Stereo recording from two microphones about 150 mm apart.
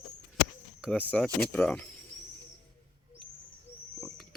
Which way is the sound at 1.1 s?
5° left (ahead or behind).